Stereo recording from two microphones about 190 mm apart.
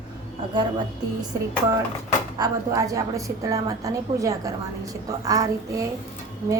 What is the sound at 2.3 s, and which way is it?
A woman's voice, 20° right (ahead or behind).